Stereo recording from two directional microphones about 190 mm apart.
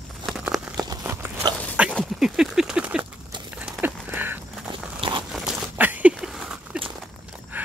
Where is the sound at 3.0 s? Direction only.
25° right (ahead or behind).